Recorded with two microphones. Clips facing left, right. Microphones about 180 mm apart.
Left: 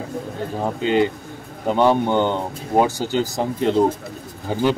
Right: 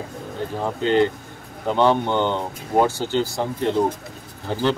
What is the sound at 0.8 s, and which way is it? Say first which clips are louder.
Speech: right 1 dB; 10° left (ahead or behind).